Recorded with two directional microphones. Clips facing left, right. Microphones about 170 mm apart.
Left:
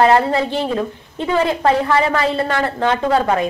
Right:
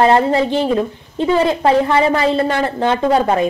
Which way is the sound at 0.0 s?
25° right (ahead or behind).